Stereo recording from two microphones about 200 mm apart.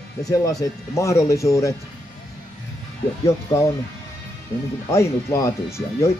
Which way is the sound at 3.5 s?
20° left (ahead or behind).